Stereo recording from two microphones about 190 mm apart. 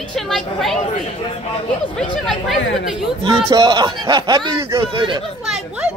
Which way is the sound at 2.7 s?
Centre (ahead or behind).